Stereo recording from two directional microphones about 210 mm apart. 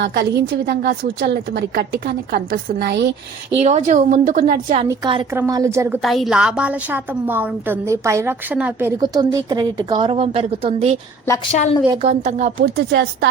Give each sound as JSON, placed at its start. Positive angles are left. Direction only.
{"t": 0.0, "sound": "a woman's voice", "side_deg": -55}
{"t": 3.5, "sound": "a woman's voice", "side_deg": -30}
{"t": 4.9, "sound": "a woman's voice", "side_deg": -20}
{"t": 6.0, "sound": "a woman's voice", "side_deg": 0}
{"t": 11.5, "sound": "a woman's voice", "side_deg": 35}
{"t": 11.9, "sound": "a woman's voice", "side_deg": -30}